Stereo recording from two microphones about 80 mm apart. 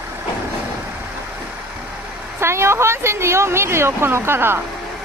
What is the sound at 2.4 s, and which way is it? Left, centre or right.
Speech, right.